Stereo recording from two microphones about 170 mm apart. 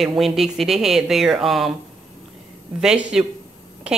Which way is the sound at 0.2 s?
Centre (ahead or behind).